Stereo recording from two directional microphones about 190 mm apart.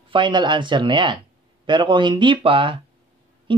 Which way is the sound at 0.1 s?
25° right (ahead or behind).